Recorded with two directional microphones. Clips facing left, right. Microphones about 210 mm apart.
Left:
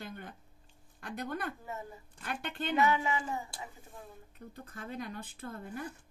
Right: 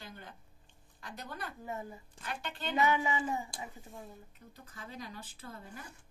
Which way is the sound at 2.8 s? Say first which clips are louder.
Even; 20° right (ahead or behind).